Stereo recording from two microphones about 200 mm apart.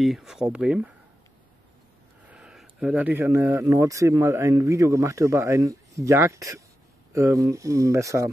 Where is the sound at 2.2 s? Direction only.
5° right (ahead or behind).